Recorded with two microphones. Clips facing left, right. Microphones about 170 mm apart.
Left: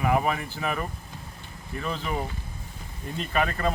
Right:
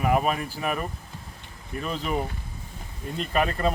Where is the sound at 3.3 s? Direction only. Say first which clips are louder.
Right 2 dB; 30° right (ahead or behind).